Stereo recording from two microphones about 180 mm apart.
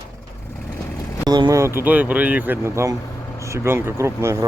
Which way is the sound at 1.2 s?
20° right (ahead or behind).